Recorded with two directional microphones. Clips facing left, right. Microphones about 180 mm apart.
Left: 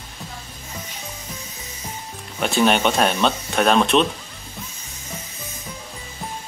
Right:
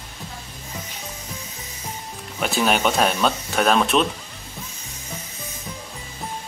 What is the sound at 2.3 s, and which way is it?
Speech, centre (ahead or behind).